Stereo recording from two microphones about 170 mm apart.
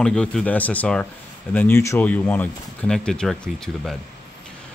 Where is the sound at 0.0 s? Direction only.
5° left (ahead or behind).